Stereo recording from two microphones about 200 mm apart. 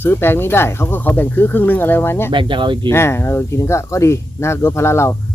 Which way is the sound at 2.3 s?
25° right (ahead or behind).